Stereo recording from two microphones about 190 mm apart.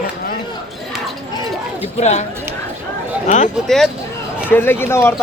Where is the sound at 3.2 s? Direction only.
40° left (ahead or behind).